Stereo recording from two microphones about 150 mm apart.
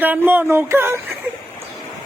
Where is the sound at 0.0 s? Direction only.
10° right (ahead or behind).